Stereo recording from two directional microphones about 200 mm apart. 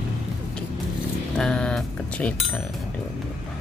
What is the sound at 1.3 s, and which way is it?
Speech, 5° left (ahead or behind).